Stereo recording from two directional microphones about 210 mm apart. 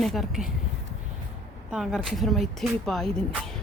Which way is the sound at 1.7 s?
Centre (ahead or behind).